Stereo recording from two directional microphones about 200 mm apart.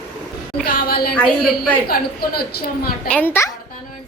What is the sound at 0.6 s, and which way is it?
A woman's voice, 45° left (ahead or behind).